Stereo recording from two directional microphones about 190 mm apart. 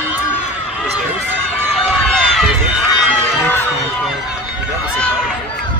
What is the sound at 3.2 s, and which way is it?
Crowd, 10° left (ahead or behind).